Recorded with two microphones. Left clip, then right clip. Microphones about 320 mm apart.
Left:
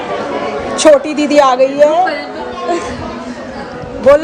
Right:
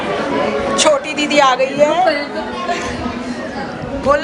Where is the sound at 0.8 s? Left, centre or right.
Centre.